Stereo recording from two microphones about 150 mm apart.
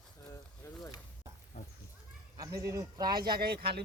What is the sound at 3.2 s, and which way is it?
Speech, 90° right.